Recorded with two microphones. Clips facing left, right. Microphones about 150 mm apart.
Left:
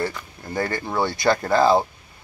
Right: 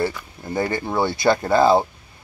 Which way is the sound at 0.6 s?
20° right (ahead or behind).